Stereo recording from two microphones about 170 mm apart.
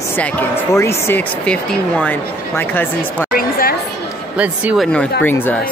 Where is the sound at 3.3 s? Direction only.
60° left (ahead or behind).